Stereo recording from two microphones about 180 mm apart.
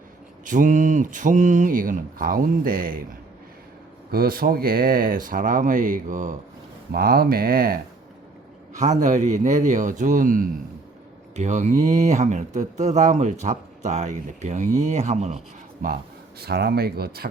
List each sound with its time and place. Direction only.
0.4 s speech: 45° right (ahead or behind)
4.1 s speech: 55° right (ahead or behind)
6.9 s speech: 55° right (ahead or behind)
8.7 s speech: 40° right (ahead or behind)
15.8 s speech: 50° right (ahead or behind)
16.4 s speech: 65° right (ahead or behind)